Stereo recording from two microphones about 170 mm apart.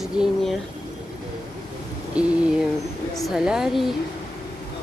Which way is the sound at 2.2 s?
5° right (ahead or behind).